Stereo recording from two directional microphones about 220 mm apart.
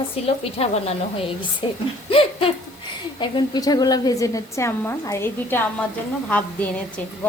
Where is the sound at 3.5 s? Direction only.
15° left (ahead or behind).